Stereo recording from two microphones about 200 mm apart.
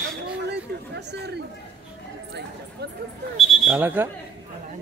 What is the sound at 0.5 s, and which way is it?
Chatter, 55° right (ahead or behind).